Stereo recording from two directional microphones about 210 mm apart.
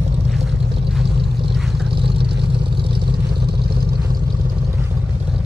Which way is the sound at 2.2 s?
50° right (ahead or behind).